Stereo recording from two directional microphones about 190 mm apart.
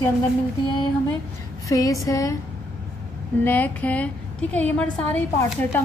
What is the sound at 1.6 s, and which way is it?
Speech, 15° left (ahead or behind).